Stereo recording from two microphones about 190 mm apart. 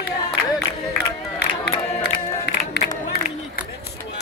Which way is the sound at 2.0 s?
60° left (ahead or behind).